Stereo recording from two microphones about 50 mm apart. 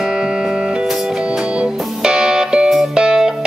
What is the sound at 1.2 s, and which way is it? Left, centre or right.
Music, centre.